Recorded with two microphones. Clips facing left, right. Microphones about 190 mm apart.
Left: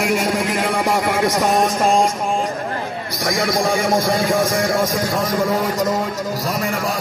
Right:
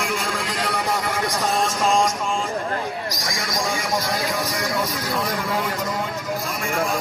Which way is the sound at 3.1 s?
60° left (ahead or behind).